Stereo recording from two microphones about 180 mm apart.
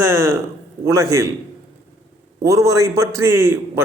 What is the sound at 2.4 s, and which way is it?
A man's voice, 15° right (ahead or behind).